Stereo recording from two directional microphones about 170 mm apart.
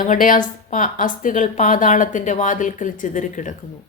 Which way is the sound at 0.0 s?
50° left (ahead or behind).